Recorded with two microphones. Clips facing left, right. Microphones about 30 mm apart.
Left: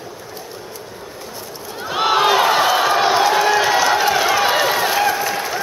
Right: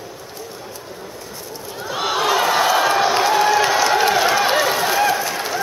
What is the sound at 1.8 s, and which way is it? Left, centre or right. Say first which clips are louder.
Run: left 5 dB; centre.